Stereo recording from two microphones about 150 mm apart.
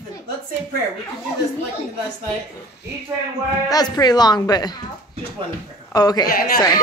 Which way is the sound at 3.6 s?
25° left (ahead or behind).